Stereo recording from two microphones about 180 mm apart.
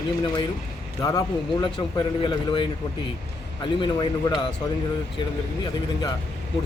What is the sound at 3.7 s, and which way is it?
Speech, 25° left (ahead or behind).